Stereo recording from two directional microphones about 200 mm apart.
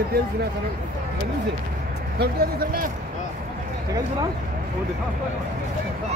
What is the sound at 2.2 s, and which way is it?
Speech, 50° right (ahead or behind).